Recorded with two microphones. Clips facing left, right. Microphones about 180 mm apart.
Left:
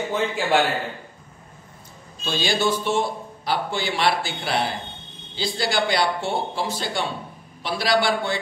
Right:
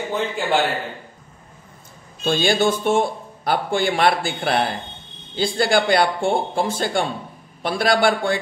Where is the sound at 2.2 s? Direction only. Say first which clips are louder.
Right 5 dB; 50° right (ahead or behind).